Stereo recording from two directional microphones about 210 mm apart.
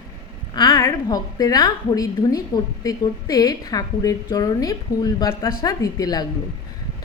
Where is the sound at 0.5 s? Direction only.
15° left (ahead or behind).